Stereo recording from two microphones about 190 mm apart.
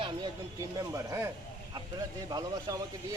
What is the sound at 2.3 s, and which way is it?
Speech, 20° right (ahead or behind).